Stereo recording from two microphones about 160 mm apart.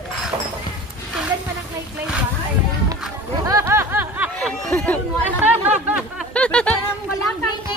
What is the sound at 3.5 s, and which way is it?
Snicker, 20° right (ahead or behind).